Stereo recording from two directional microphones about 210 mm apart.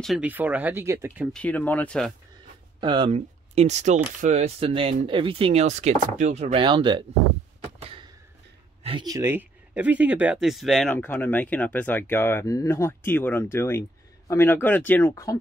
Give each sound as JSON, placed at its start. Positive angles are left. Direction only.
{"t": 0.0, "sound": "speech", "side_deg": -5}
{"t": 1.3, "sound": "speech", "side_deg": 5}
{"t": 2.8, "sound": "speech", "side_deg": -20}
{"t": 8.8, "sound": "speech", "side_deg": -20}